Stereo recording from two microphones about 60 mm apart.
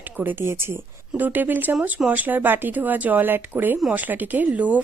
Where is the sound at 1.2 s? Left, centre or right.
Right.